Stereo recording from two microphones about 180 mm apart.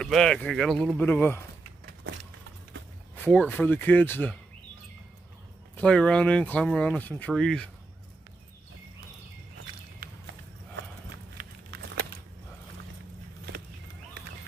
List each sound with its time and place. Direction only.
0.0 s speech: 5° left (ahead or behind)
3.3 s speech: 10° left (ahead or behind)
5.8 s speech: 5° left (ahead or behind)
10.0 s walk: 60° right (ahead or behind)
11.3 s a sound: 70° right (ahead or behind)